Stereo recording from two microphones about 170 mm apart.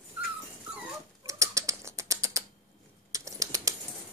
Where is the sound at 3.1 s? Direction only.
20° right (ahead or behind).